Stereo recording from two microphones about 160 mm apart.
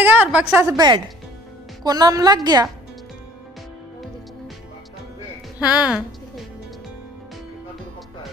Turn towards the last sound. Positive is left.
turn(degrees=-5)  # may be behind; listen again after turning